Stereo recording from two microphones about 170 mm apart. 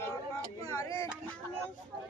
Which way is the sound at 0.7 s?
15° left (ahead or behind).